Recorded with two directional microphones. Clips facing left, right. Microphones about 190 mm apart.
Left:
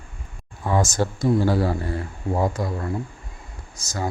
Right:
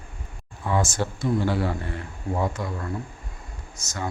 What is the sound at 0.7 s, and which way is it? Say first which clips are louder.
Speech: left 3 dB; 40° left (ahead or behind).